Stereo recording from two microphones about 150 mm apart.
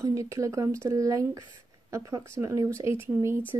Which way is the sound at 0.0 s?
20° right (ahead or behind).